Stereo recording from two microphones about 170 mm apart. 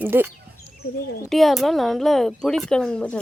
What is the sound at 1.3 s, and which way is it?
Speech, centre (ahead or behind).